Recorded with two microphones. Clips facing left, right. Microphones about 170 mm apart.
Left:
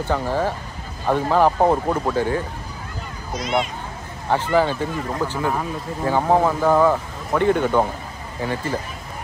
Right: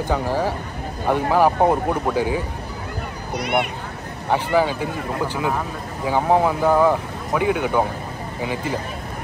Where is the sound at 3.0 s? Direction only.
65° right (ahead or behind).